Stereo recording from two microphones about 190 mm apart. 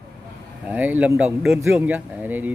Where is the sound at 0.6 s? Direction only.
10° right (ahead or behind).